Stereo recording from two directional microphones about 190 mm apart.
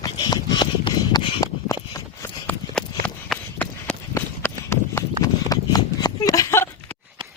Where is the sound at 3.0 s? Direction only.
5° left (ahead or behind).